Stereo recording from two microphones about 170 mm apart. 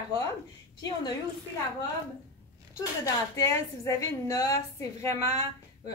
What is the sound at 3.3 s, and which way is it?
A woman's voice, 20° left (ahead or behind).